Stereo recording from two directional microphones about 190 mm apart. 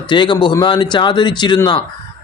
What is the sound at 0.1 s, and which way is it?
Speech, 25° left (ahead or behind).